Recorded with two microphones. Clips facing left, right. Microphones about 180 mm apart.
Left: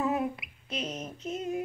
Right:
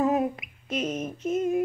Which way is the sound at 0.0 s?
45° right (ahead or behind).